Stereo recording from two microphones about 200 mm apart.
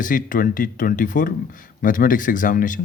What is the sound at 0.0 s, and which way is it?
Speech, 40° left (ahead or behind).